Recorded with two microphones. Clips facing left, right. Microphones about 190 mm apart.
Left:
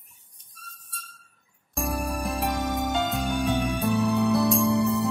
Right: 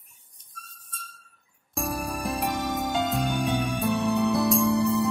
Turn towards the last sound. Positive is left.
turn(degrees=0)  # may be behind; listen again after turning